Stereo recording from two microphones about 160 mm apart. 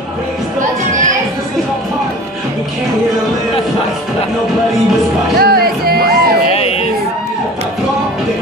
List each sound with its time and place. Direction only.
5.4 s music: 70° right (ahead or behind)